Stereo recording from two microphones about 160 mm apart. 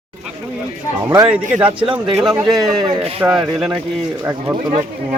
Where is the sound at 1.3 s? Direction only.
10° right (ahead or behind).